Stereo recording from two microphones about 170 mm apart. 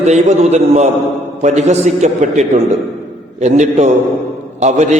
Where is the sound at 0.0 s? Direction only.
40° right (ahead or behind).